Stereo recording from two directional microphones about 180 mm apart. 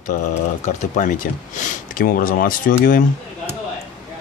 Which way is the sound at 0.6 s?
45° left (ahead or behind).